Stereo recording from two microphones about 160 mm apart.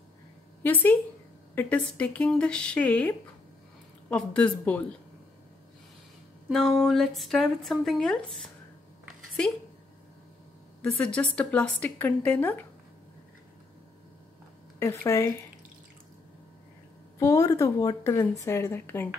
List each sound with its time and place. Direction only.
0.7 s a woman's voice: 10° left (ahead or behind)
6.5 s speech: 5° left (ahead or behind)
10.8 s a woman's voice: 10° left (ahead or behind)
14.8 s a woman's voice: 15° left (ahead or behind)
17.2 s a woman's voice: 20° left (ahead or behind)